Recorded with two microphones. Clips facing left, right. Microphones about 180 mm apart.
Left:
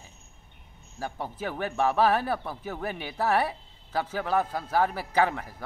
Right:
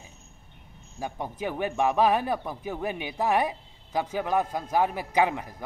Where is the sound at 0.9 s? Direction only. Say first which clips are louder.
Right 1 dB; 15° right (ahead or behind).